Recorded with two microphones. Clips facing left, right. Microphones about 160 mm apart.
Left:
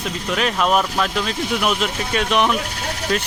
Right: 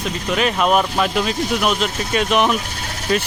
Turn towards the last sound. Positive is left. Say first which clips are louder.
# right 1 dB
turn(degrees=-10)  # may be behind; listen again after turning